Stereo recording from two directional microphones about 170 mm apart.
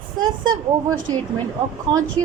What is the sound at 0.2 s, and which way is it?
Speech, 25° right (ahead or behind).